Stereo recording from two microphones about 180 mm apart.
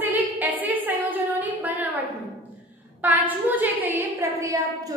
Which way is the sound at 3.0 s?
10° right (ahead or behind).